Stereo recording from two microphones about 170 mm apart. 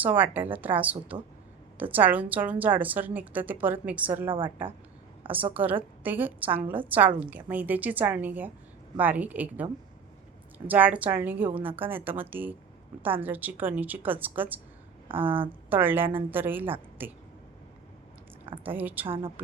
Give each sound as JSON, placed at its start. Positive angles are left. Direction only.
{"t": 0.0, "sound": "a woman's voice", "side_deg": -10}
{"t": 4.3, "sound": "a woman's voice", "side_deg": -30}
{"t": 5.5, "sound": "a woman's voice", "side_deg": -10}
{"t": 10.7, "sound": "a woman's voice", "side_deg": -10}
{"t": 15.0, "sound": "speech", "side_deg": -30}
{"t": 15.7, "sound": "a woman's voice", "side_deg": -10}
{"t": 18.6, "sound": "a woman's voice", "side_deg": -10}
{"t": 19.0, "sound": "a woman's voice", "side_deg": -30}